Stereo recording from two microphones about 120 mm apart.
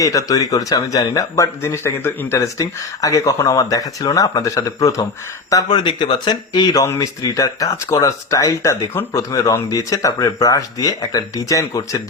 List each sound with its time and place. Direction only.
0.0 s speech: 30° left (ahead or behind)
6.8 s speech: 25° left (ahead or behind)